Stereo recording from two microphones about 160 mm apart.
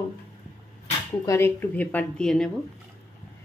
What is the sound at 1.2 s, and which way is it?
A woman's voice, 20° left (ahead or behind).